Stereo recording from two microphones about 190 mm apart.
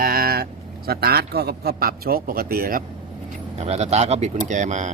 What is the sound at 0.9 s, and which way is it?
A man's voice, 55° right (ahead or behind).